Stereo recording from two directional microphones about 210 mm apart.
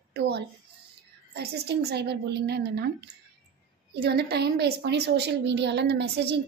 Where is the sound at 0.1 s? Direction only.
55° right (ahead or behind).